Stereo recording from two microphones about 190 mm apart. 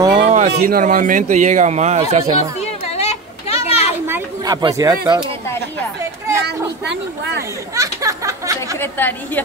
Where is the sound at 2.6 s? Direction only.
35° left (ahead or behind).